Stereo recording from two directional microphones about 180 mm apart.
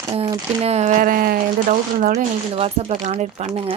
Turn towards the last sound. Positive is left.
turn(degrees=-35)  # may be behind; listen again after turning